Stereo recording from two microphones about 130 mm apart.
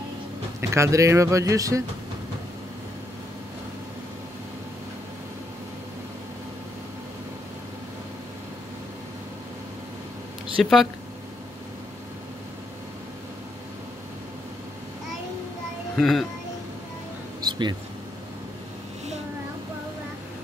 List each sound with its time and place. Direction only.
0.6 s speech: 20° right (ahead or behind)
10.6 s speech: centre (ahead or behind)
16.0 s speech: centre (ahead or behind)
17.5 s air conditioning: 35° right (ahead or behind)